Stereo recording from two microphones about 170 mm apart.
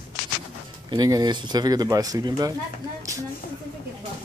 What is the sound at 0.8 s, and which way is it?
Speech, 25° right (ahead or behind).